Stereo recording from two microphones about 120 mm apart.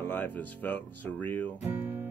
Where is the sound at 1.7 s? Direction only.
15° right (ahead or behind).